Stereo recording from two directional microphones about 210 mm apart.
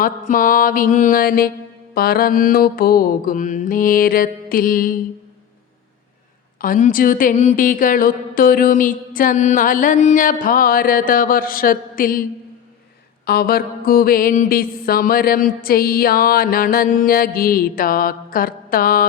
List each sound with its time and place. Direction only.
0.0 s a woman's voice: 40° left (ahead or behind)
2.0 s mantra: 45° left (ahead or behind)
6.6 s a woman's voice: 40° left (ahead or behind)
13.2 s mantra: 45° left (ahead or behind)